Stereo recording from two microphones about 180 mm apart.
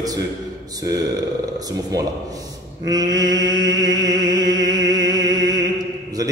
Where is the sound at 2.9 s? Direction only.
20° right (ahead or behind).